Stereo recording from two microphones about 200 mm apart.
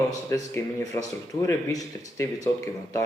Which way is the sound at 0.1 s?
15° left (ahead or behind).